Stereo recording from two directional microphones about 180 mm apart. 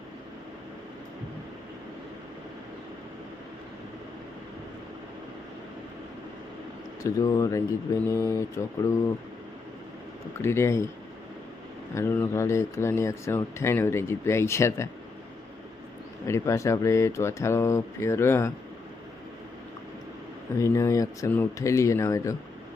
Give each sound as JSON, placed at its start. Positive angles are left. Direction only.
{"t": 7.0, "sound": "speech", "side_deg": 20}
{"t": 10.4, "sound": "speech", "side_deg": 15}
{"t": 11.9, "sound": "speech", "side_deg": 15}
{"t": 16.2, "sound": "speech", "side_deg": 15}
{"t": 20.6, "sound": "speech", "side_deg": 15}